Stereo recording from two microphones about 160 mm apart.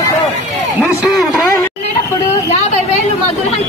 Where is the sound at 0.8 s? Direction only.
Centre (ahead or behind).